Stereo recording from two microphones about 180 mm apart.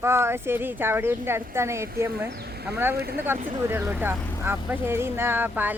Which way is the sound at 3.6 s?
15° right (ahead or behind).